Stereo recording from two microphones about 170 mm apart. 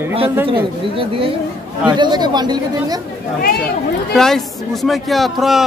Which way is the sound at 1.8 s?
25° right (ahead or behind).